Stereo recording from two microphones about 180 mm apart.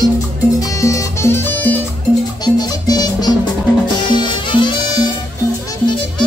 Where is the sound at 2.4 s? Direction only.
20° left (ahead or behind).